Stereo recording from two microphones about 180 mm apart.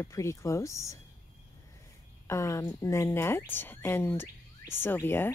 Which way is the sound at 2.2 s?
15° left (ahead or behind).